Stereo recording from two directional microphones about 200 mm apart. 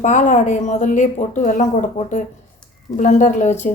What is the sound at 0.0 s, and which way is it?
A woman's voice, 40° left (ahead or behind).